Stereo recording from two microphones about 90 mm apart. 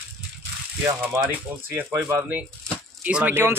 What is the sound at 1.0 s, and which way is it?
Speech, 20° right (ahead or behind).